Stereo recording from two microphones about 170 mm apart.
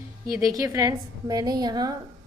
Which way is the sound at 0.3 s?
20° right (ahead or behind).